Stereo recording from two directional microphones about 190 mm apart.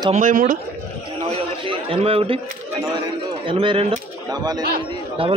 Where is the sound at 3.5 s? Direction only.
25° right (ahead or behind).